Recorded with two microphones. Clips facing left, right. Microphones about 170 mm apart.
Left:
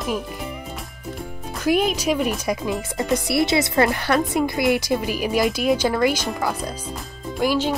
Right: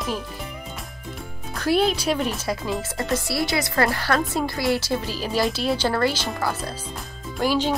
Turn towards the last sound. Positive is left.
turn(degrees=10)  # may be behind; listen again after turning